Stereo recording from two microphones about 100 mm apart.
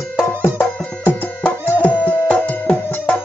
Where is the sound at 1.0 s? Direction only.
20° left (ahead or behind).